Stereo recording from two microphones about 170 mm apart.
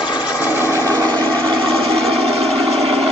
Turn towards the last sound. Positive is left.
turn(degrees=-35)  # may be behind; listen again after turning